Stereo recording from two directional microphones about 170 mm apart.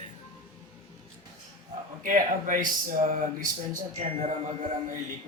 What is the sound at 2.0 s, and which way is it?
Speech, 50° right (ahead or behind).